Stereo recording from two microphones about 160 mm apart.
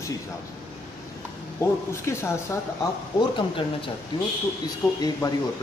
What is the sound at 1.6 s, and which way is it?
Speech, 15° left (ahead or behind).